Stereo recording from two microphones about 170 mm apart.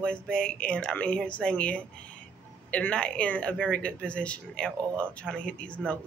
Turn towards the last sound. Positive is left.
turn(degrees=5)  # may be behind; listen again after turning